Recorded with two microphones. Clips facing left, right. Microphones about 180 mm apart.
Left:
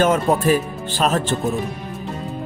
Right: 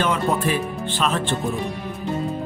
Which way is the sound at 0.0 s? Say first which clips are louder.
Left 5 dB; 45° left (ahead or behind).